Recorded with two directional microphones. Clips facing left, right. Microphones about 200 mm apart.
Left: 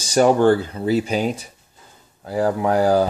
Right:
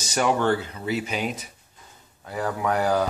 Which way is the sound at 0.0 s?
35° left (ahead or behind).